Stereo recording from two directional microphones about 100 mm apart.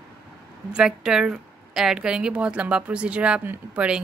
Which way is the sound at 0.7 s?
5° right (ahead or behind).